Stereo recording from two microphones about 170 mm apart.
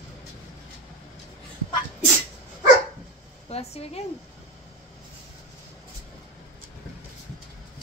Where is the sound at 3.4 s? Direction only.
35° left (ahead or behind).